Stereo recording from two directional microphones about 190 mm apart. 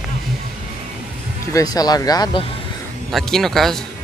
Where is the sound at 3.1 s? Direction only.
Centre (ahead or behind).